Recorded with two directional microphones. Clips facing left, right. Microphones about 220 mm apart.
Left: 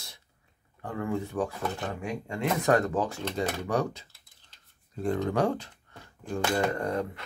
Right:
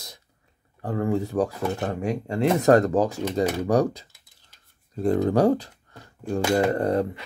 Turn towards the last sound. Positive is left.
turn(degrees=-35)  # may be behind; listen again after turning